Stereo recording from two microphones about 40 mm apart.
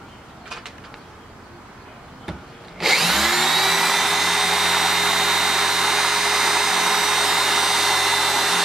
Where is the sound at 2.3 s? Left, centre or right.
Centre.